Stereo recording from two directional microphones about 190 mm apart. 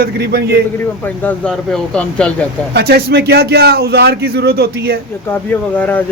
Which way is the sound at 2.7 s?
60° right (ahead or behind).